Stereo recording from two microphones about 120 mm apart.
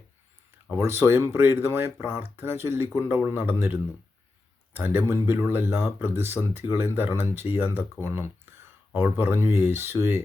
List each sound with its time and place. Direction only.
0.8 s speech: 20° right (ahead or behind)